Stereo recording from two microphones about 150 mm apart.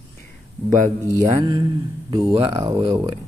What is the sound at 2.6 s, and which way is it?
Speech, 20° right (ahead or behind).